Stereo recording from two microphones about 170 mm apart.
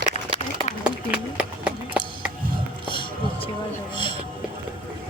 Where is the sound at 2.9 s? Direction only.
30° left (ahead or behind).